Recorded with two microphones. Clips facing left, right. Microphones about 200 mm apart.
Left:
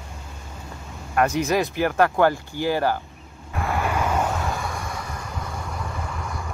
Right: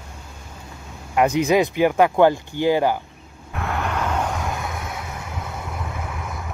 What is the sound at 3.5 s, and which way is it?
Vehicle, centre (ahead or behind).